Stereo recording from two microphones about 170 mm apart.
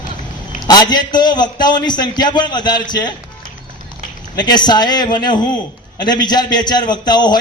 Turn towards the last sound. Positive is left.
turn(degrees=25)  # may be behind; listen again after turning